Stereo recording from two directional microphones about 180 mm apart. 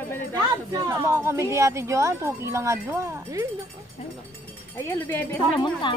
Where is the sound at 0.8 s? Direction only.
15° right (ahead or behind).